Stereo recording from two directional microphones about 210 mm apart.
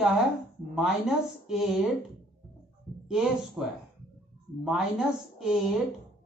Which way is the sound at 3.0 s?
Centre (ahead or behind).